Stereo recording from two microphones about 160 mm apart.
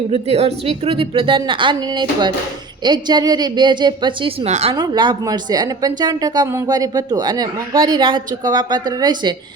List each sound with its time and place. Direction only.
0.1 s a woman's voice: 40° right (ahead or behind)
4.7 s speech: 30° right (ahead or behind)